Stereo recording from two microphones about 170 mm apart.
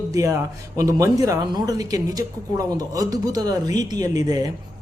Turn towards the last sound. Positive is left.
turn(degrees=-20)  # may be behind; listen again after turning